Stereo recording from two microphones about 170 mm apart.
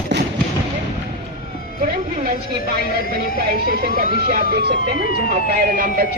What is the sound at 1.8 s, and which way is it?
Speech, 60° right (ahead or behind).